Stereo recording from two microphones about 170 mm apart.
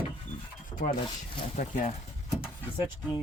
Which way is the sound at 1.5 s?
50° left (ahead or behind).